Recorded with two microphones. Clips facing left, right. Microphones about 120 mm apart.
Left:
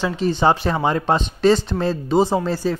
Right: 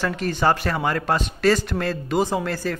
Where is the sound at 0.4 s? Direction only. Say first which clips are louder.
Left 2 dB; 20° left (ahead or behind).